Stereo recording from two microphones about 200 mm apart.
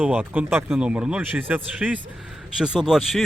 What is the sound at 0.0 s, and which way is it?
Speech, 10° right (ahead or behind).